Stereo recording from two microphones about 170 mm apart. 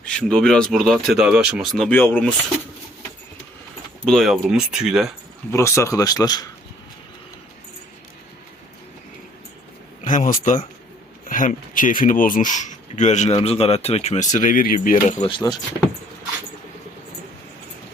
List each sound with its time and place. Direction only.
0.0 s speech: 5° left (ahead or behind)
1.9 s speech: 10° left (ahead or behind)
4.0 s speech: centre (ahead or behind)
5.5 s speech: 15° left (ahead or behind)
10.0 s speech: 50° left (ahead or behind)
15.2 s speech: 25° left (ahead or behind)